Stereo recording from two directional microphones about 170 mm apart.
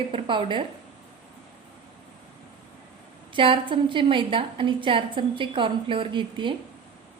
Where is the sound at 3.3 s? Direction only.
30° right (ahead or behind).